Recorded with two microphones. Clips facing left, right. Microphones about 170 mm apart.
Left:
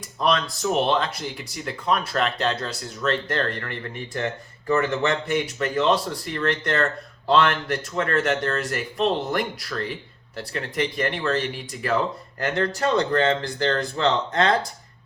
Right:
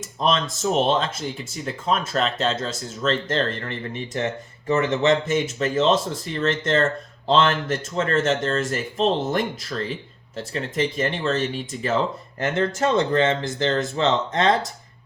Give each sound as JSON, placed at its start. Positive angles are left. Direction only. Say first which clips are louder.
{"t": 0.0, "sound": "speech", "louder": "even", "side_deg": -25}